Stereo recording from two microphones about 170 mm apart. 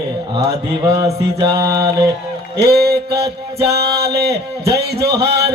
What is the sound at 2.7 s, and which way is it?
Speech, 70° right (ahead or behind).